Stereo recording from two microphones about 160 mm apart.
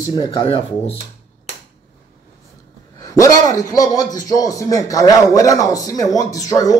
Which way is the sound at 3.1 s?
20° left (ahead or behind).